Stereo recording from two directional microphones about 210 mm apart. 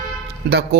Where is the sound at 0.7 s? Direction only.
45° right (ahead or behind).